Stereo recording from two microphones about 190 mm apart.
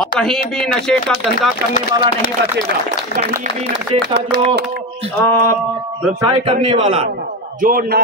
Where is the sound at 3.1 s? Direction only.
40° right (ahead or behind).